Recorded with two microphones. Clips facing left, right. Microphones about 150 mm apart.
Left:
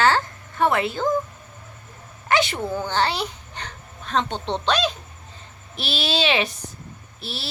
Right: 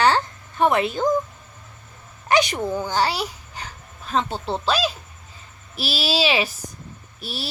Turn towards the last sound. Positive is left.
turn(degrees=-10)  # may be behind; listen again after turning